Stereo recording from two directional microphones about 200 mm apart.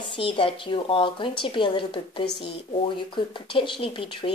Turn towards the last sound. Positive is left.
turn(degrees=25)  # may be behind; listen again after turning